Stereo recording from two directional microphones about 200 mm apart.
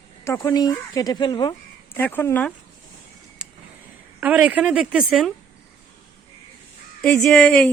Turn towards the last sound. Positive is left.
turn(degrees=0)  # may be behind; listen again after turning